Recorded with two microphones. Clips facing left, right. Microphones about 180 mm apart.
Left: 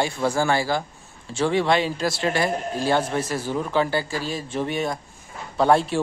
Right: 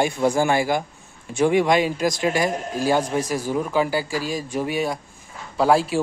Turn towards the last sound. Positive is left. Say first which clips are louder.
# even
turn(degrees=-5)  # may be behind; listen again after turning